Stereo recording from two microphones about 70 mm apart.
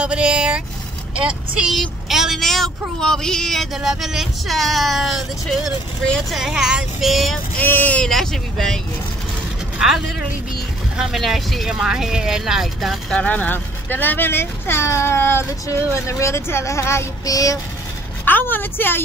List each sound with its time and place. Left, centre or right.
0.0 s speech: centre
1.8 s speech: centre
7.5 s speech: left
8.0 s speech: centre
9.8 s speech: centre
13.1 s speech: centre; by 17.0 s left
17.3 s child singing: left
18.2 s speech: left